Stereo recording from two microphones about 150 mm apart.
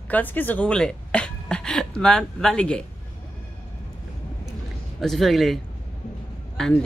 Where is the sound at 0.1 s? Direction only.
10° left (ahead or behind).